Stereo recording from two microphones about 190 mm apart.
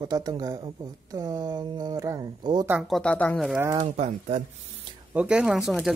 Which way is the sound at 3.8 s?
35° right (ahead or behind).